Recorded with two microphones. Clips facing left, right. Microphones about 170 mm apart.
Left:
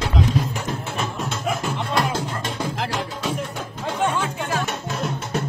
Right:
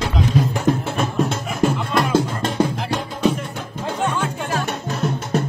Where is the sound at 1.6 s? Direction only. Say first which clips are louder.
Right 9 dB; 60° right (ahead or behind).